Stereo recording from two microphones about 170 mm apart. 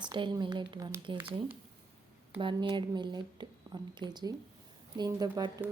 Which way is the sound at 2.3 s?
30° right (ahead or behind).